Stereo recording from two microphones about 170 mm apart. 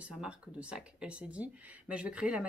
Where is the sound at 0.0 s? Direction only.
5° right (ahead or behind).